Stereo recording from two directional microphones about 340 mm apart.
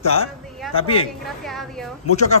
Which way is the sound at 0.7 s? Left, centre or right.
Centre.